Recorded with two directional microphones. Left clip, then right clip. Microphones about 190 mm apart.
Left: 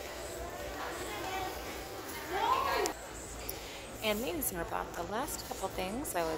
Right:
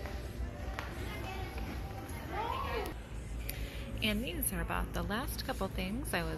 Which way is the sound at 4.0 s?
10° left (ahead or behind).